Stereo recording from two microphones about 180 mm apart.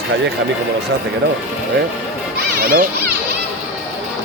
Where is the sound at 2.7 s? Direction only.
50° right (ahead or behind).